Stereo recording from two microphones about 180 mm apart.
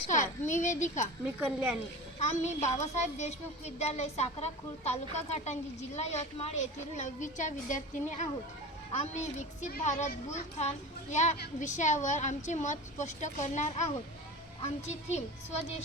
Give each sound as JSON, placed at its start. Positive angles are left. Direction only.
{"t": 0.1, "sound": "a child's voice", "side_deg": 45}
{"t": 1.4, "sound": "speech", "side_deg": -10}
{"t": 2.1, "sound": "a woman's voice", "side_deg": 40}